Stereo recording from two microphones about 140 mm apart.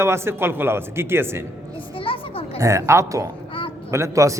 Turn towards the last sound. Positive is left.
turn(degrees=-20)  # may be behind; listen again after turning